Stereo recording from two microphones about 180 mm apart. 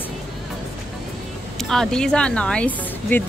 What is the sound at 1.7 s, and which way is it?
Speech, 5° left (ahead or behind).